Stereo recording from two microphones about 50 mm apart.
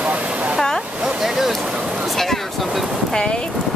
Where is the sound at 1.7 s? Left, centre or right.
Centre.